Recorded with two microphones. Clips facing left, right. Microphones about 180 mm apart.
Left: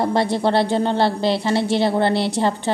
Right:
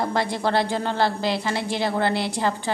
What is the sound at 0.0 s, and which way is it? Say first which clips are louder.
A woman's voice: left 5 dB; 30° left (ahead or behind).